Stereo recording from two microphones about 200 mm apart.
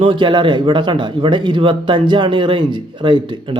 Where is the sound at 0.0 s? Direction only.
25° right (ahead or behind).